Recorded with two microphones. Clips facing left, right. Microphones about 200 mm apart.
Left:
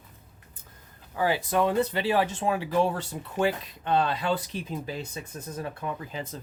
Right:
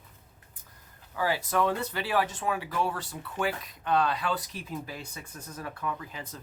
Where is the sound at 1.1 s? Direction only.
20° left (ahead or behind).